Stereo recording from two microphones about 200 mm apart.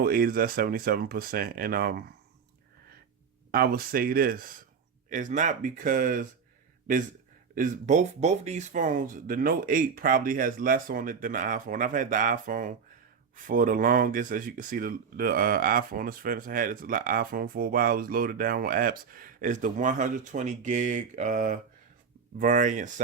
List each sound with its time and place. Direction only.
0.0 s speech: 45° right (ahead or behind)
3.5 s speech: 50° right (ahead or behind)
7.5 s speech: 40° right (ahead or behind)